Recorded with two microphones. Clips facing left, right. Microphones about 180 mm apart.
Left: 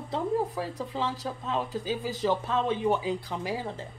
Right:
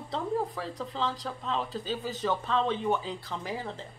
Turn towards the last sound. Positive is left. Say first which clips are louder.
# left 3 dB
turn(degrees=10)  # may be behind; listen again after turning